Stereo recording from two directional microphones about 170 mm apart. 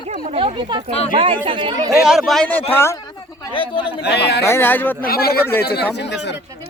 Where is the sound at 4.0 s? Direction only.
75° left (ahead or behind).